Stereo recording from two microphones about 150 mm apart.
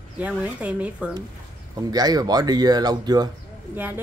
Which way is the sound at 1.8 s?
25° right (ahead or behind).